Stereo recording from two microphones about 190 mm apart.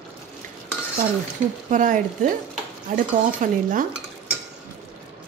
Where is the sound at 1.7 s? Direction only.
45° right (ahead or behind).